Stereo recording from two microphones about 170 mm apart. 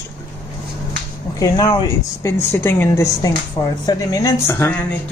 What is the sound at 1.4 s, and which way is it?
Speech, 25° left (ahead or behind).